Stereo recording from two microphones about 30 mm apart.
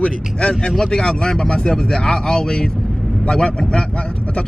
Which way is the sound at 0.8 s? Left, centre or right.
Left.